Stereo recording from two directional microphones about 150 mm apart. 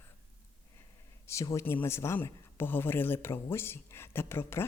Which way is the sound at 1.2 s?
20° left (ahead or behind).